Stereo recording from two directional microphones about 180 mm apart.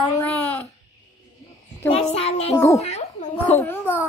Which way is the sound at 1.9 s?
35° left (ahead or behind).